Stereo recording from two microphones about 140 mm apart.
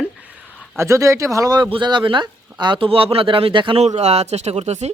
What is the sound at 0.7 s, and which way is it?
Speech, 20° right (ahead or behind).